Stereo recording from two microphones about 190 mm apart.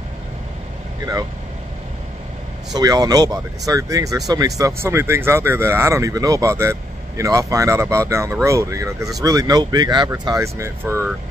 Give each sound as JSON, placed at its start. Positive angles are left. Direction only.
{"t": 2.7, "sound": "speech", "side_deg": -20}